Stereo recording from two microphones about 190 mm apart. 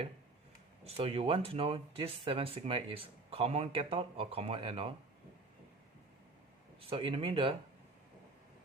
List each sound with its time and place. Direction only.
0.9 s speech: 30° right (ahead or behind)
6.9 s speech: 30° right (ahead or behind)